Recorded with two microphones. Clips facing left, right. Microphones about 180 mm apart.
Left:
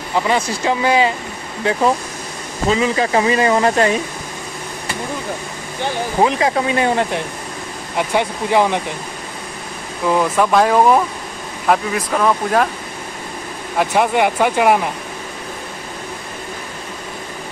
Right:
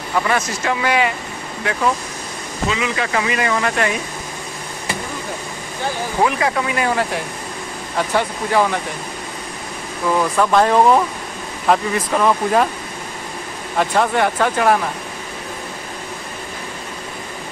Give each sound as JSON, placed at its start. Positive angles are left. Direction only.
{"t": 0.1, "sound": "speech", "side_deg": 20}
{"t": 6.2, "sound": "speech", "side_deg": 25}
{"t": 8.0, "sound": "speech", "side_deg": 15}
{"t": 10.0, "sound": "speech", "side_deg": 10}
{"t": 13.7, "sound": "speech", "side_deg": 15}